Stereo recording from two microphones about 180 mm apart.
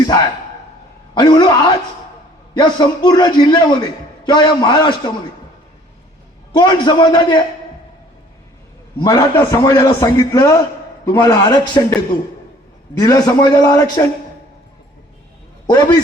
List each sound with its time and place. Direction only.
1.1 s a man's voice: 25° left (ahead or behind)
6.5 s a man's voice: 25° left (ahead or behind)
9.0 s a man's voice: 20° left (ahead or behind)
13.0 s a man's voice: 20° left (ahead or behind)
15.6 s a man's voice: 25° left (ahead or behind)